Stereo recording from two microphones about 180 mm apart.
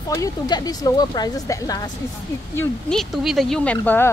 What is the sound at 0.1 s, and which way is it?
A woman's voice, 20° left (ahead or behind).